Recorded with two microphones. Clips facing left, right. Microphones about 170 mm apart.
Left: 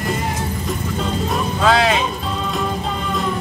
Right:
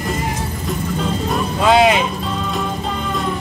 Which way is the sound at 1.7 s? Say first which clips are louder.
Right 5 dB; 15° right (ahead or behind).